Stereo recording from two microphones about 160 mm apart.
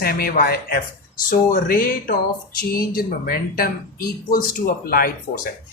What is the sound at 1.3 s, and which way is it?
Speech, 60° left (ahead or behind).